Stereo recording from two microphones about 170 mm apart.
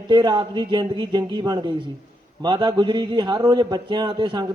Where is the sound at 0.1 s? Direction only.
25° right (ahead or behind).